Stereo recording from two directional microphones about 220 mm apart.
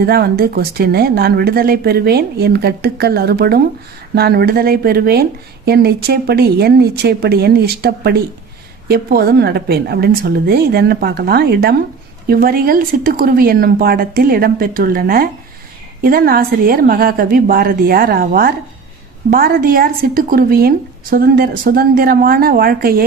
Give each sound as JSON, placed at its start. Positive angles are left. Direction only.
{"t": 0.0, "sound": "a woman's voice", "side_deg": -45}